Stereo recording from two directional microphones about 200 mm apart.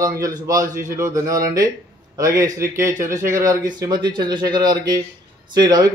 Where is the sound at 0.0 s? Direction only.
15° right (ahead or behind).